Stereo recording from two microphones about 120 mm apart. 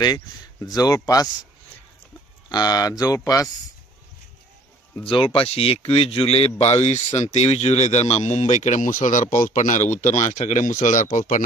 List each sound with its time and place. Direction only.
0.6 s speech: 30° left (ahead or behind)
2.5 s speech: 35° left (ahead or behind)
4.9 s a man's voice: 45° left (ahead or behind); by 11.4 s 90° left